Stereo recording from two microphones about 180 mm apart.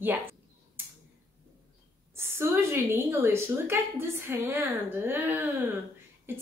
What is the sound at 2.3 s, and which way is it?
A woman's voice, 15° right (ahead or behind).